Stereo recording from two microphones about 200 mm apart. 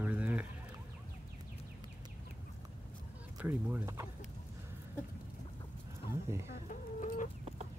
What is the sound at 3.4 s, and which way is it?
Speech, 10° right (ahead or behind).